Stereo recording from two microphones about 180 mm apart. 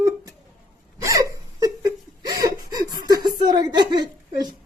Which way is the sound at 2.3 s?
20° right (ahead or behind).